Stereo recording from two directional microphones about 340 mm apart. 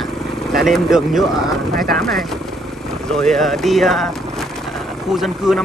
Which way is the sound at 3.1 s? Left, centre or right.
Centre.